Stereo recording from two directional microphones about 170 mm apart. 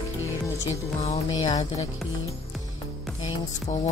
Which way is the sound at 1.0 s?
40° left (ahead or behind).